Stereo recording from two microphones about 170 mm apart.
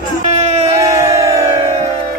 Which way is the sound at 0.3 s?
40° right (ahead or behind).